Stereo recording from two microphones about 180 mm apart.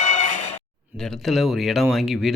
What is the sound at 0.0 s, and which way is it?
Music, 45° left (ahead or behind).